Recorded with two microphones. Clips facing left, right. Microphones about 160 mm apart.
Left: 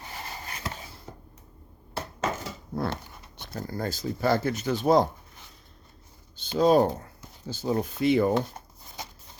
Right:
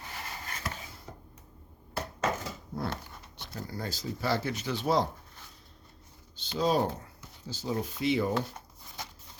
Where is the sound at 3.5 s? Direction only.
50° left (ahead or behind).